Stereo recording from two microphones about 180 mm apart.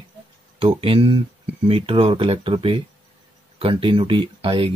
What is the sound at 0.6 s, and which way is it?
Speech, 30° right (ahead or behind).